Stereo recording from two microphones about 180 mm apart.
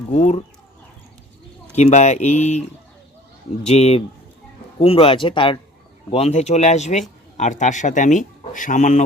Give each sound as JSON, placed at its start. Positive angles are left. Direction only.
{"t": 0.1, "sound": "speech", "side_deg": 40}
{"t": 1.7, "sound": "speech", "side_deg": 40}
{"t": 3.7, "sound": "speech", "side_deg": 35}